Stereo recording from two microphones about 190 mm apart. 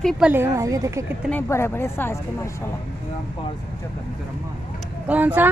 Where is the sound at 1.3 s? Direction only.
10° left (ahead or behind).